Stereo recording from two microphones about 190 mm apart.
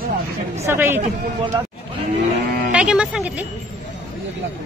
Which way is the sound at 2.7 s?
5° right (ahead or behind).